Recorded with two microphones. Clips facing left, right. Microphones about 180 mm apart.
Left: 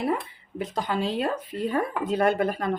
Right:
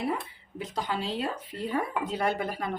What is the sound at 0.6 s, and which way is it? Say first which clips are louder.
Speech: left 5 dB; 55° left (ahead or behind).